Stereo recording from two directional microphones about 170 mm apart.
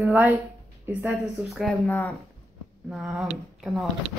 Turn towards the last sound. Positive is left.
turn(degrees=0)  # may be behind; listen again after turning